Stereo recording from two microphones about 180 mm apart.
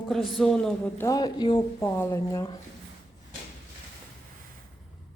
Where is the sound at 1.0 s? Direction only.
20° left (ahead or behind).